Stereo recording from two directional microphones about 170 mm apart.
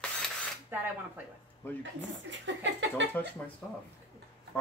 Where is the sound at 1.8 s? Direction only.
90° right.